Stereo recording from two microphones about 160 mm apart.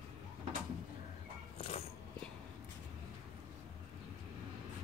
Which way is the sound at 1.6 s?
40° left (ahead or behind).